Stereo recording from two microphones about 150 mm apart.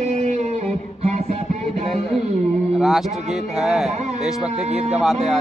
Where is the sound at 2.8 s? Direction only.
Centre (ahead or behind).